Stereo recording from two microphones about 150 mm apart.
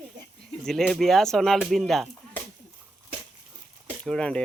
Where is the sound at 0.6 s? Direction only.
Centre (ahead or behind).